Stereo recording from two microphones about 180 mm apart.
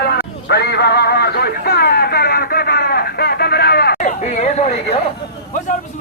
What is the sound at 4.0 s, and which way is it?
Chatter, 45° left (ahead or behind).